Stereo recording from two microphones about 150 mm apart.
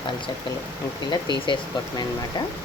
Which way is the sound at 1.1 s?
30° left (ahead or behind).